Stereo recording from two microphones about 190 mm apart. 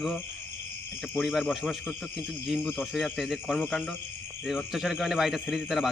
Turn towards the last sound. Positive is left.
turn(degrees=0)  # may be behind; listen again after turning